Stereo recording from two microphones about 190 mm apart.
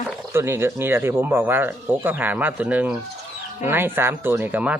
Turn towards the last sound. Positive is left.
turn(degrees=-10)  # may be behind; listen again after turning